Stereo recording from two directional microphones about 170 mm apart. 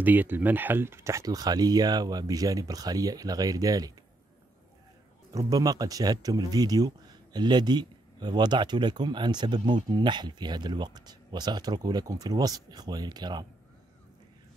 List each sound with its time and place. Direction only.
0.0 s speech: 10° right (ahead or behind)
5.3 s speech: 20° right (ahead or behind)